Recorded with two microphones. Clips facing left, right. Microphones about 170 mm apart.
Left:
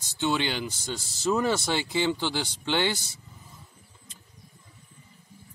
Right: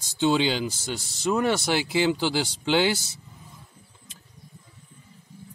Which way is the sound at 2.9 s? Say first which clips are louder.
Right 4 dB; 90° right.